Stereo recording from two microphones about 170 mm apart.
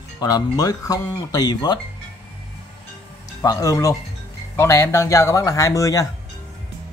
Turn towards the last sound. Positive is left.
turn(degrees=20)  # may be behind; listen again after turning